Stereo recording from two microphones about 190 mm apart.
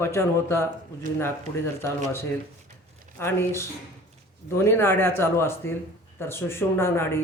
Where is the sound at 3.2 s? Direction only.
10° left (ahead or behind).